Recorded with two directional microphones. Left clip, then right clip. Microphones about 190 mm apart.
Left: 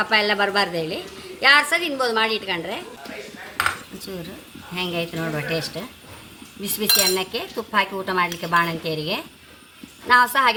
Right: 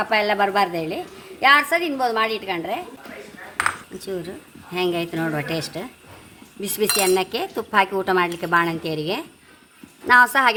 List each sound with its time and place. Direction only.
0.0 s a woman's voice: 30° right (ahead or behind)
4.7 s cutlery: 45° right (ahead or behind)